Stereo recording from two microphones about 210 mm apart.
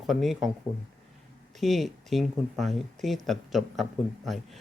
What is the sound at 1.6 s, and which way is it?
Speech, centre (ahead or behind).